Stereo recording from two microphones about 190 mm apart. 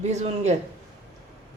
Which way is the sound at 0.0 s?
35° right (ahead or behind).